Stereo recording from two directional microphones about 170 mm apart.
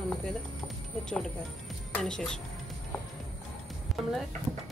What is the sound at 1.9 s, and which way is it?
Speech, 5° left (ahead or behind).